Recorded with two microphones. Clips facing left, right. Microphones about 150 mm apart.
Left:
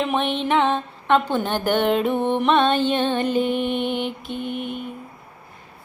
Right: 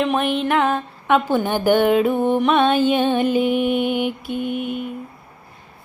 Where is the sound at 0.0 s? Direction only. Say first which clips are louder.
Right 3 dB; centre (ahead or behind).